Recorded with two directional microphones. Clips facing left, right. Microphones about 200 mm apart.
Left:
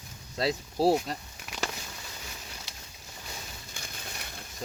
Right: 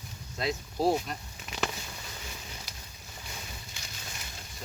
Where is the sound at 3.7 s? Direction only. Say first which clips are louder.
Left 3 dB; 55° left (ahead or behind).